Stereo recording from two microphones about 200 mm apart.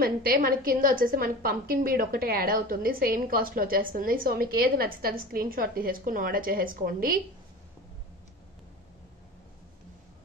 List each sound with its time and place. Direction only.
0.0 s a woman's voice: 45° right (ahead or behind)